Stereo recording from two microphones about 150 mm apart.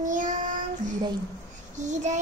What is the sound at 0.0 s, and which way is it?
Child singing, 60° right (ahead or behind).